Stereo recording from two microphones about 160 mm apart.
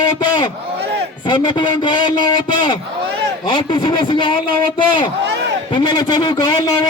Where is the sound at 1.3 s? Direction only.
30° left (ahead or behind).